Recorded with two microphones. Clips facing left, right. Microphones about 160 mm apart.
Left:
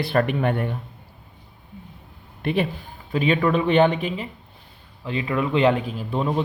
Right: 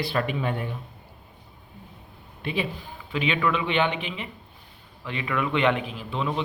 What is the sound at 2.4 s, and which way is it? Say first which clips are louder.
Speech: left 6 dB; 55° left (ahead or behind).